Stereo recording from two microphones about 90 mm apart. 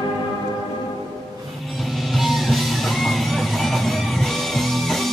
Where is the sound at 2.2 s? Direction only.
Centre (ahead or behind).